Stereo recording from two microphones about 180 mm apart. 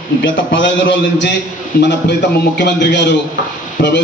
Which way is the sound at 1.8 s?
75° left (ahead or behind).